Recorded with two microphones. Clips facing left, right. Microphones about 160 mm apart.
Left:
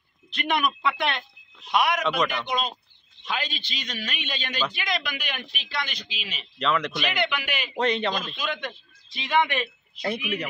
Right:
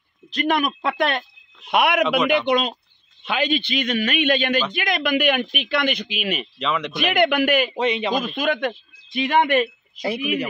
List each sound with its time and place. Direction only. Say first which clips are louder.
0.3 s speech: right 5 dB; 40° right (ahead or behind)
1.7 s a man's voice: right 5 dB; 65° right (ahead or behind)
6.6 s speech: even; centre (ahead or behind)
7.2 s speech: right 11 dB; 50° right (ahead or behind)
7.7 s speech: right 3 dB; 5° right (ahead or behind)
8.4 s speech: right 9 dB; 55° right (ahead or behind)
10.0 s speech: right 5 dB; 5° right (ahead or behind)